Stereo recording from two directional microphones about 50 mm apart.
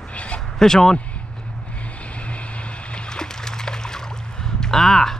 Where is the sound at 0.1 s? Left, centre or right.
Left.